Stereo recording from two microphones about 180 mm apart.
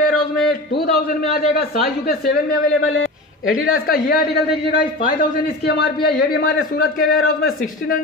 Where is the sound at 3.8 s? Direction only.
55° left (ahead or behind).